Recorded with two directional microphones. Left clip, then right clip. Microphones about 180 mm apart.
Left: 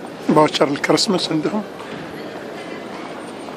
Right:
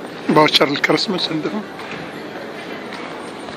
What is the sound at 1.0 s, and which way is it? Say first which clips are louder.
Speech: left 1 dB; 30° left (ahead or behind).